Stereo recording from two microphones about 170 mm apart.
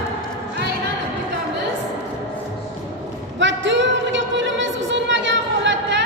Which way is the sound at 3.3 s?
90° right.